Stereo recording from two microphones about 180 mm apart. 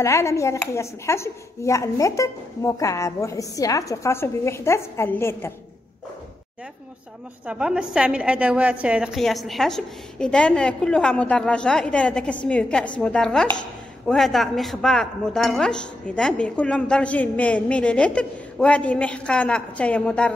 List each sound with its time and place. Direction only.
0.0 s a woman's voice: 15° left (ahead or behind)
7.4 s a woman's voice: 5° right (ahead or behind)